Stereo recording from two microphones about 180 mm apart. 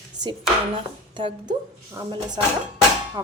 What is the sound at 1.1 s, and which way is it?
Speech, 25° right (ahead or behind).